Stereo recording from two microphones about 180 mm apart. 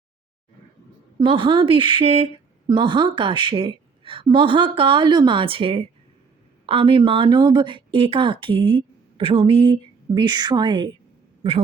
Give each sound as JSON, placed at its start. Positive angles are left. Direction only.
{"t": 1.2, "sound": "speech", "side_deg": -30}